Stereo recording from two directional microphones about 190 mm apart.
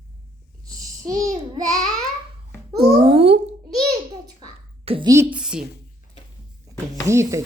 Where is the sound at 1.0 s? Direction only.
15° right (ahead or behind).